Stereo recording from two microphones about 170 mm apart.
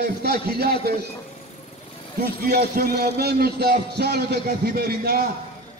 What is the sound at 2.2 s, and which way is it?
A man's voice, 65° right (ahead or behind).